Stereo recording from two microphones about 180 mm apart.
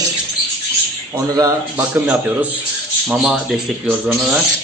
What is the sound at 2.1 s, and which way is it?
A man's voice, 10° right (ahead or behind).